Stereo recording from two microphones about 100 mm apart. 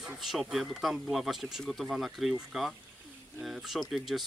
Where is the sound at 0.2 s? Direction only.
Centre (ahead or behind).